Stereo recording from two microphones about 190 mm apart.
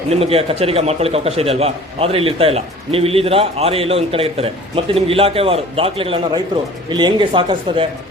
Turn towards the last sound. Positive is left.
turn(degrees=-25)  # may be behind; listen again after turning